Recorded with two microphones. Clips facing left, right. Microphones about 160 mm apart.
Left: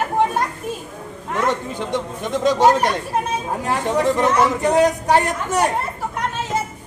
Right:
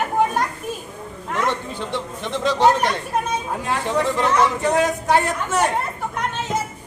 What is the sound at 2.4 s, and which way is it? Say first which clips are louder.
Speech: left 2 dB; 15° left (ahead or behind).